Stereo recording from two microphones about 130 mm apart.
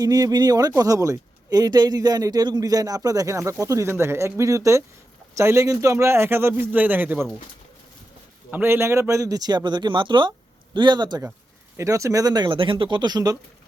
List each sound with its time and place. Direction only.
0.0 s speech: 30° right (ahead or behind)
8.4 s a man's voice: 15° right (ahead or behind); by 11.2 s 35° right (ahead or behind)
11.8 s a man's voice: 25° right (ahead or behind)